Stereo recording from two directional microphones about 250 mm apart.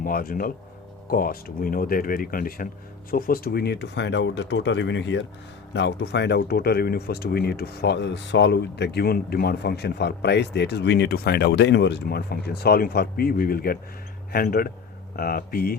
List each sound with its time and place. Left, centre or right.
0.0 s speech: left